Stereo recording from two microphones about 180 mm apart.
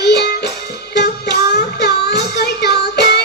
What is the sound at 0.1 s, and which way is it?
Music, 65° left (ahead or behind).